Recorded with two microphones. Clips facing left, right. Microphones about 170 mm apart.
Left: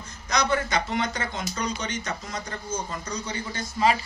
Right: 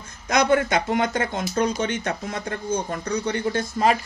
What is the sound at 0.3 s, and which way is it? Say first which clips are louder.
Speech: right 6 dB; 55° right (ahead or behind).